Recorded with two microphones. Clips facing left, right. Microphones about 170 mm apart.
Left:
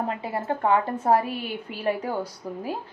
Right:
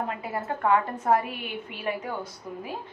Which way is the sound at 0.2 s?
30° left (ahead or behind).